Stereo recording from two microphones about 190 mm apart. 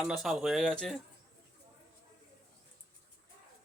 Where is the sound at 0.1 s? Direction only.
Centre (ahead or behind).